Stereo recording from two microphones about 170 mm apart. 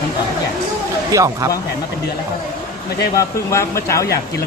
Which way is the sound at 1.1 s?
20° right (ahead or behind).